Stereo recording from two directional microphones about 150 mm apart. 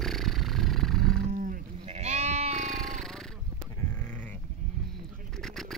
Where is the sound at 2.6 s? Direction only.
5° left (ahead or behind).